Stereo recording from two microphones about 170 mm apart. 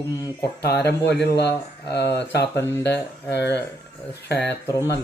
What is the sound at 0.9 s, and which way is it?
Speech, 80° left.